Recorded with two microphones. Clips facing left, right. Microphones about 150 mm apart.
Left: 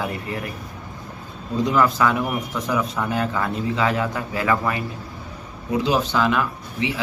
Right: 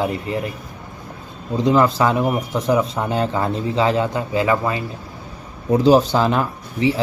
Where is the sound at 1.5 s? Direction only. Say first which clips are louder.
Right 4 dB; 25° right (ahead or behind).